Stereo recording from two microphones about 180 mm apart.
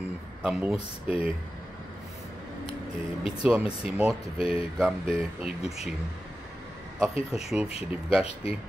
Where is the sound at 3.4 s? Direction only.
5° right (ahead or behind).